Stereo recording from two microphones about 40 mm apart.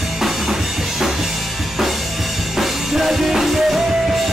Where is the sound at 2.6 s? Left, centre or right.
Centre.